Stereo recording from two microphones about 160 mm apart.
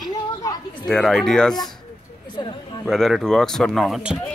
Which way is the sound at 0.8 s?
Centre (ahead or behind).